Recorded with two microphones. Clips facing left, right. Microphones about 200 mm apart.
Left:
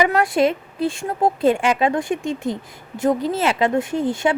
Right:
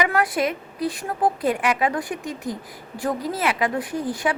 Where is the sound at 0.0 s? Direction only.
25° left (ahead or behind).